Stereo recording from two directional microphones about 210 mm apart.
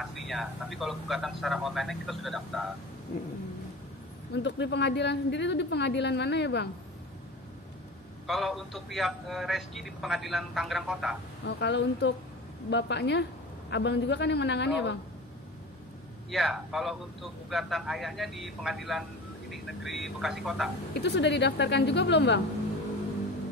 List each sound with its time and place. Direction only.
0.0 s a man's voice: centre (ahead or behind)
4.4 s speech: 55° left (ahead or behind)
8.3 s a man's voice: centre (ahead or behind)
11.4 s speech: 55° left (ahead or behind)
16.3 s a man's voice: centre (ahead or behind)
21.0 s speech: 55° left (ahead or behind)